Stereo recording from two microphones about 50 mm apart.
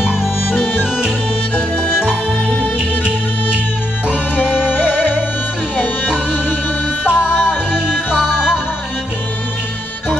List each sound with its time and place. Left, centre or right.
0.1 s music: left
1.8 s music: left
4.4 s music: left
7.1 s music: right